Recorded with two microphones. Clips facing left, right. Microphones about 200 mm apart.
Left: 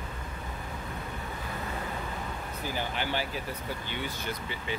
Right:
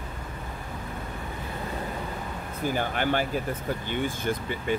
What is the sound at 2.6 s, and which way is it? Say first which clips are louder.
Speech: right 7 dB; 50° right (ahead or behind).